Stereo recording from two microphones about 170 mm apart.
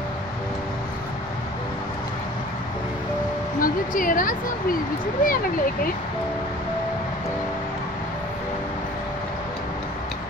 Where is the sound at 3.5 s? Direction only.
55° left (ahead or behind).